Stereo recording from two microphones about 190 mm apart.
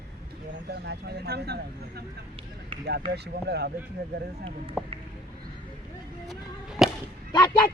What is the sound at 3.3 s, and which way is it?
Speech, 60° right (ahead or behind).